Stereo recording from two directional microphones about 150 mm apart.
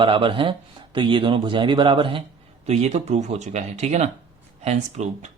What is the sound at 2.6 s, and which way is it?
Speech, 45° right (ahead or behind).